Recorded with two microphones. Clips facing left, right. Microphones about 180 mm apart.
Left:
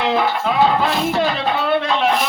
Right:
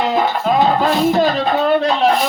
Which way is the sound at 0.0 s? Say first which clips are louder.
Right 2 dB; 40° right (ahead or behind).